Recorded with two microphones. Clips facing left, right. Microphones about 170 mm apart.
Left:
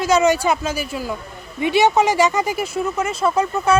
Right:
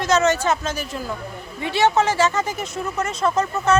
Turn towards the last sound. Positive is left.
turn(degrees=10)  # may be behind; listen again after turning